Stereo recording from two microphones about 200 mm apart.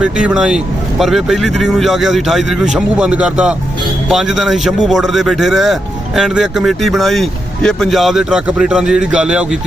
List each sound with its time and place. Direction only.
0.0 s speech: 5° right (ahead or behind)